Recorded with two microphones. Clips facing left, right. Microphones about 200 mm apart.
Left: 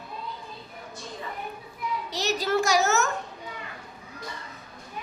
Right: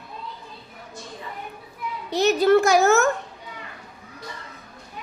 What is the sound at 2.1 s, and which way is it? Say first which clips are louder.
A child's voice: right 11 dB; 55° right (ahead or behind).